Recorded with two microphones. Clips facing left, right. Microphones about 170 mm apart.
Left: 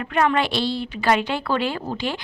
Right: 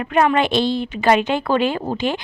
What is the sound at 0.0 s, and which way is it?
Speech, 20° right (ahead or behind).